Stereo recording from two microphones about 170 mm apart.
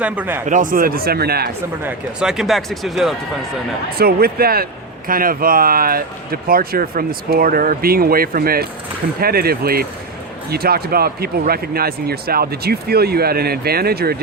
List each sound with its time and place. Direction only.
0.0 s speech: 10° right (ahead or behind)
0.4 s a man's voice: 50° right (ahead or behind); by 1.5 s 65° right (ahead or behind)
1.8 s speech: 5° right (ahead or behind)
3.9 s a man's voice: 65° right (ahead or behind)